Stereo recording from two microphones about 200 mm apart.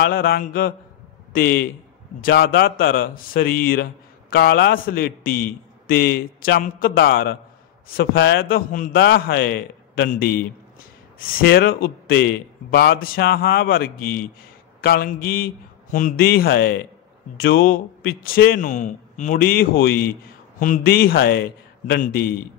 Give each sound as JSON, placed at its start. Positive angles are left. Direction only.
{"t": 0.0, "sound": "a man's voice", "side_deg": 50}